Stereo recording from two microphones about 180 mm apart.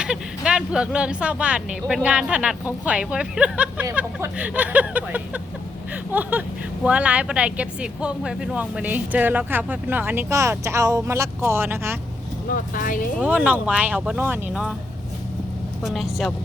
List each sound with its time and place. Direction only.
0.0 s speech: 5° right (ahead or behind)
12.5 s speech: 50° left (ahead or behind)
13.1 s speech: 10° right (ahead or behind)
15.8 s speech: centre (ahead or behind)